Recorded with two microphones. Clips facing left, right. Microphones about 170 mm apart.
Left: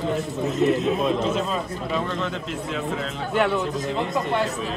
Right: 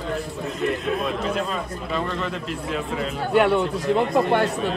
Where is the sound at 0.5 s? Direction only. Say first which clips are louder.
Left 4 dB; centre (ahead or behind).